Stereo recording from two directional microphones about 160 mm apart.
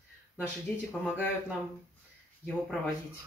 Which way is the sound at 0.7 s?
10° left (ahead or behind).